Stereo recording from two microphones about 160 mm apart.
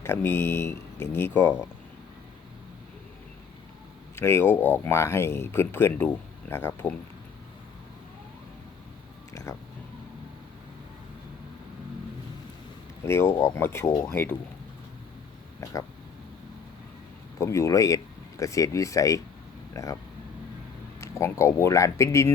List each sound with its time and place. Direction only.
0.0 s speech: 15° left (ahead or behind)
4.1 s speech: 15° left (ahead or behind)
9.3 s a sound: 20° left (ahead or behind)
13.1 s speech: 15° left (ahead or behind)
15.6 s speech: 20° left (ahead or behind)
17.3 s speech: 20° left (ahead or behind)
21.0 s speech: 15° left (ahead or behind)